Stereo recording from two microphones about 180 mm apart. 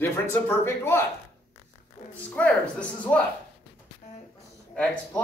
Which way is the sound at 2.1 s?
5° left (ahead or behind).